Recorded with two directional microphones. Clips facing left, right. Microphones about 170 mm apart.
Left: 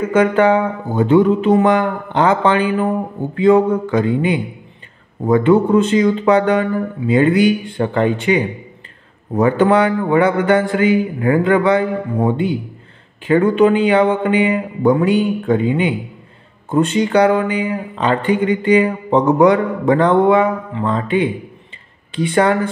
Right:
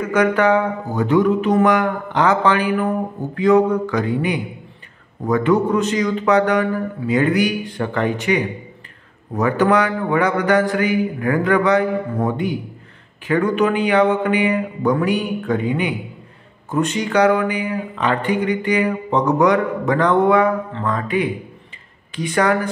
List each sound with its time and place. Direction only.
0.0 s speech: 25° left (ahead or behind)